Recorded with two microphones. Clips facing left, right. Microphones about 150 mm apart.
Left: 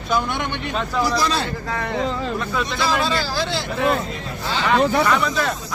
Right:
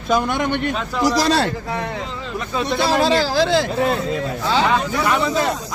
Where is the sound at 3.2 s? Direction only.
90° right.